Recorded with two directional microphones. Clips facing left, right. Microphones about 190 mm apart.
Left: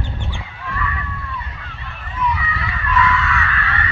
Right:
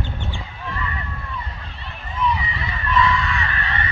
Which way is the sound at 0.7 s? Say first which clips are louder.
Left 4 dB; 25° right (ahead or behind).